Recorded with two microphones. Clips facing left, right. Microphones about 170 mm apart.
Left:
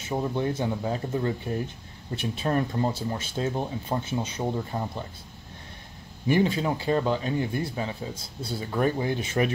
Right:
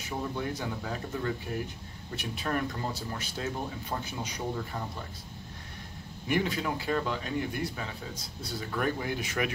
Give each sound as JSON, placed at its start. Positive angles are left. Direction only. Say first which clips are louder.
{"t": 0.0, "sound": "speech", "louder": "left 6 dB", "side_deg": 25}
{"t": 6.2, "sound": "speech", "louder": "left 6 dB", "side_deg": 30}